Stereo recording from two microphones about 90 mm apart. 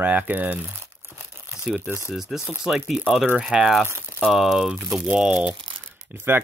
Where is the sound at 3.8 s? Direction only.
25° right (ahead or behind).